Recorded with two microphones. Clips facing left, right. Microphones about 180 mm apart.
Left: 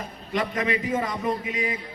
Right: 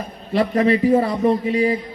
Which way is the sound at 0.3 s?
35° right (ahead or behind).